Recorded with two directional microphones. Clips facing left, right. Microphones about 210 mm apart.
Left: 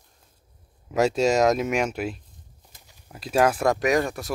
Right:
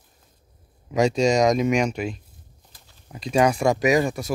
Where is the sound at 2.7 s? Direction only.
15° left (ahead or behind).